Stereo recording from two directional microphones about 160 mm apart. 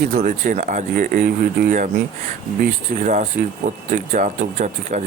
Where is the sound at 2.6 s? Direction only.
50° right (ahead or behind).